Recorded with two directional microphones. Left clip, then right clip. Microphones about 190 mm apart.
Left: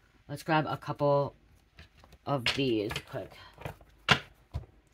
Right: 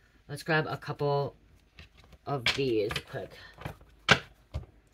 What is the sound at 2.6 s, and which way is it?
Speech, 45° left (ahead or behind).